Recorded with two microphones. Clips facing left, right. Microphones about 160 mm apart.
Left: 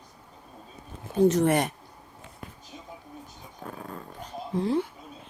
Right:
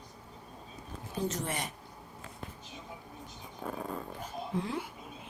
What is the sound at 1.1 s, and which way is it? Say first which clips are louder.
Speech: left 14 dB; 60° left (ahead or behind).